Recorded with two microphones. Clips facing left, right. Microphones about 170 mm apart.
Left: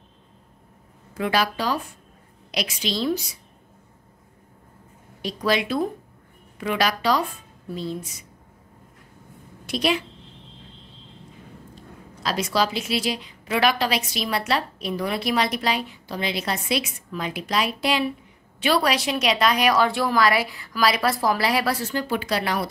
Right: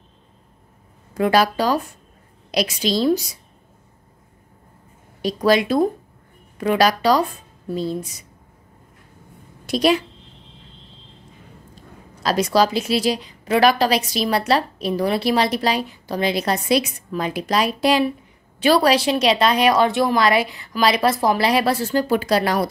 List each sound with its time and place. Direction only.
1.1 s a woman's voice: 40° right (ahead or behind)
5.2 s a woman's voice: 40° right (ahead or behind)
9.7 s a woman's voice: 40° right (ahead or behind)
12.2 s a woman's voice: 40° right (ahead or behind)